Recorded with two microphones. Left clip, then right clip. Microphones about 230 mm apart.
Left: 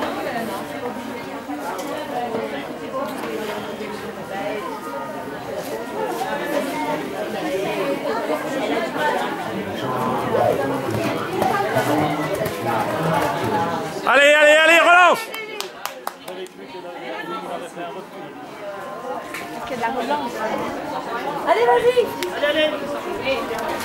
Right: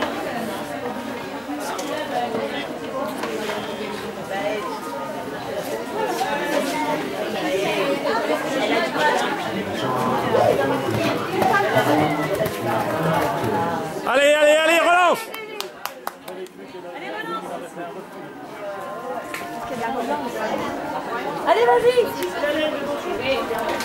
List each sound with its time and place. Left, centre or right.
0.0 s chatter: centre
5.9 s chatter: centre
9.8 s a sound: centre
11.1 s chatter: centre
19.8 s chatter: centre
21.6 s a sound: centre